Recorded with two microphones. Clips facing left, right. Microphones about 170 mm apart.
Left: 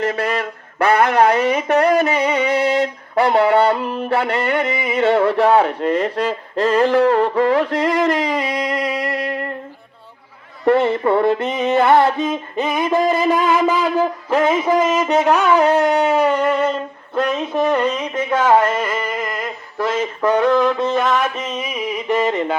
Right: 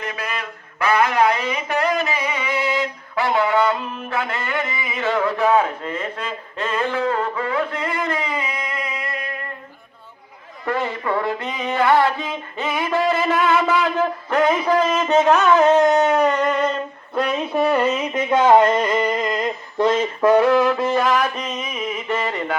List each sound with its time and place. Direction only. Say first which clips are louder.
0.9 s music: left 3 dB; 60° left (ahead or behind)
3.6 s music: left 4 dB; 30° left (ahead or behind)
5.5 s speech: left 4 dB; 70° left (ahead or behind)
5.9 s music: left 9 dB; 35° left (ahead or behind)
8.3 s music: left 6 dB; 75° left (ahead or behind)
8.5 s music: left 8 dB; 35° left (ahead or behind)
10.7 s a sound: left 8 dB; 30° left (ahead or behind); by 14.4 s 10° left (ahead or behind)
14.4 s a sound: left 1 dB; 20° left (ahead or behind)
17.2 s music: left 2 dB; centre (ahead or behind)
18.3 s a sound: right 1 dB; 15° right (ahead or behind)
20.2 s music: even; 10° right (ahead or behind); by 22.5 s 20° left (ahead or behind)